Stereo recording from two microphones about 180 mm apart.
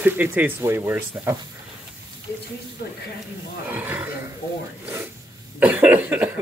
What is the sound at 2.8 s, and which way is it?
Speech, 60° left (ahead or behind).